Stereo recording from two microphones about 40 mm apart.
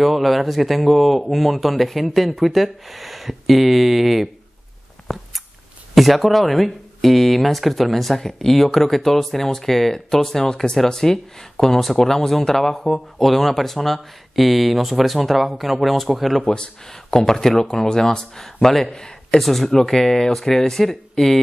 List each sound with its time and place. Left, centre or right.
0.0 s speech: centre
5.0 s chewing: centre
5.9 s speech: centre
16.4 s speech: left
17.1 s speech: centre
19.4 s speech: centre